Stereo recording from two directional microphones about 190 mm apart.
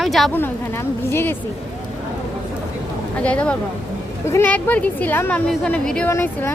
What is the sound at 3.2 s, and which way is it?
A woman's voice, 5° left (ahead or behind).